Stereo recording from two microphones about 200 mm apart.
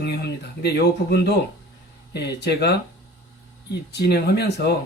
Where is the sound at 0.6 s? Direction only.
55° left (ahead or behind).